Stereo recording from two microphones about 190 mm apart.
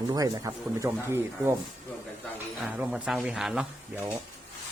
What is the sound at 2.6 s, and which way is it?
Speech, 5° right (ahead or behind).